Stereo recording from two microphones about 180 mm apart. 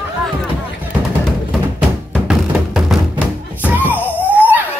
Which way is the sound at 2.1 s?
Centre (ahead or behind).